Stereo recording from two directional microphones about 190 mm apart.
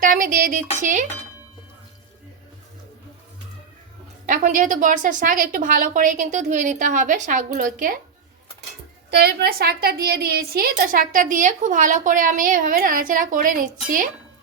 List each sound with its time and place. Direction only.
0.0 s a woman's voice: 45° right (ahead or behind)
4.3 s a woman's voice: 45° right (ahead or behind)
9.0 s a woman's voice: 55° right (ahead or behind)